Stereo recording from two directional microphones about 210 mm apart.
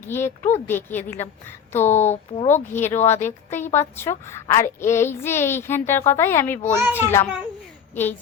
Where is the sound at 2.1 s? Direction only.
35° left (ahead or behind).